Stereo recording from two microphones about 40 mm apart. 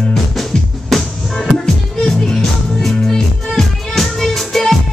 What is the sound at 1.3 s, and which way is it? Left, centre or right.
Music, left.